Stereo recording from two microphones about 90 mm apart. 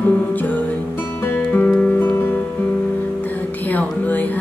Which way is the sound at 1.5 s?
15° left (ahead or behind).